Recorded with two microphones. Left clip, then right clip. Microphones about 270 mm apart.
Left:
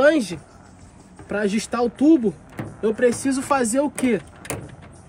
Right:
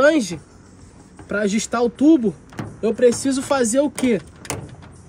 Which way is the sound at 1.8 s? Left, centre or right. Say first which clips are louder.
Right 1 dB; centre.